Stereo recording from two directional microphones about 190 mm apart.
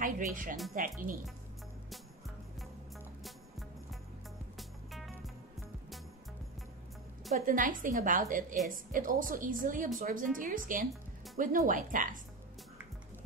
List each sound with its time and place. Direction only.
0.0 s a woman's voice: 45° right (ahead or behind)
3.3 s music: centre (ahead or behind)
7.3 s a woman's voice: 45° right (ahead or behind)